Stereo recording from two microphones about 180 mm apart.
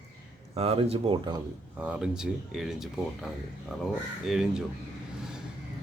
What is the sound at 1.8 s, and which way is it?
Speech, 5° right (ahead or behind).